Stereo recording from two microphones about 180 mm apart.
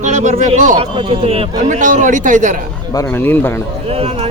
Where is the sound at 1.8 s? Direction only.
45° right (ahead or behind).